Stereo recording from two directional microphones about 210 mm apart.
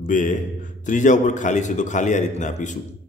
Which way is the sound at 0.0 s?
40° left (ahead or behind).